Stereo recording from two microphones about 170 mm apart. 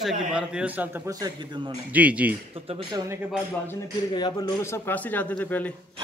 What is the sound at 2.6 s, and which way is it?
Speech, 35° right (ahead or behind).